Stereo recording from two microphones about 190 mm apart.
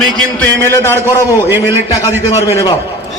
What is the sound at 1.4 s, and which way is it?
Speech, 10° right (ahead or behind).